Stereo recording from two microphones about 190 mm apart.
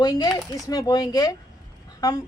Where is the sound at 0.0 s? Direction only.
20° left (ahead or behind).